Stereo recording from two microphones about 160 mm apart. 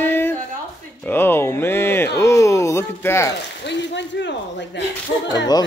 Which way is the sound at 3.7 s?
90° left.